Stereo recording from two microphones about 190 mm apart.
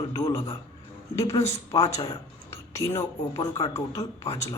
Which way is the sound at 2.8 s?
25° left (ahead or behind).